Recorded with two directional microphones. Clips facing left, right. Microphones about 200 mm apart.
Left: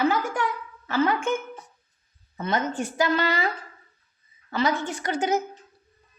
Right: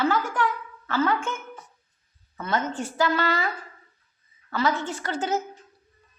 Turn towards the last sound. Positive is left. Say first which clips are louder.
# left 2 dB
turn(degrees=15)  # may be behind; listen again after turning